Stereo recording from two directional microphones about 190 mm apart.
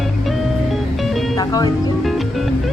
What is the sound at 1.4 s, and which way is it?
Music, 20° left (ahead or behind).